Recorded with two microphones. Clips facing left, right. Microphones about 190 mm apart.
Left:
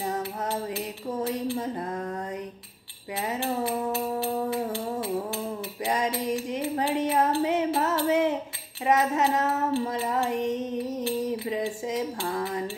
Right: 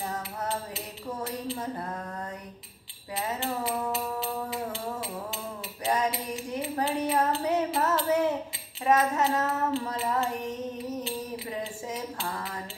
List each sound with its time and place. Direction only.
0.0 s music: 15° left (ahead or behind)
6.8 s music: 15° left (ahead or behind)
8.0 s child singing: 20° left (ahead or behind)
11.5 s a sound: 15° left (ahead or behind)